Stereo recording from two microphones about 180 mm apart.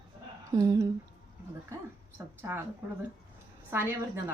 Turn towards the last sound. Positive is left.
turn(degrees=-15)  # may be behind; listen again after turning